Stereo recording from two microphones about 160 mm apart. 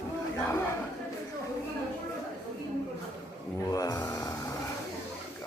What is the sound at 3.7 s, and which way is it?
Speech, 25° left (ahead or behind).